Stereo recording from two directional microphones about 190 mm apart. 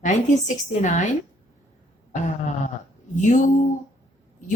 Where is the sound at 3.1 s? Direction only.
40° left (ahead or behind).